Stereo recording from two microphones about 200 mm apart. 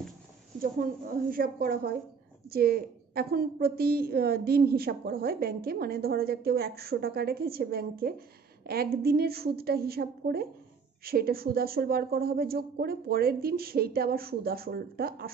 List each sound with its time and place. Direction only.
0.6 s a woman's voice: 45° right (ahead or behind)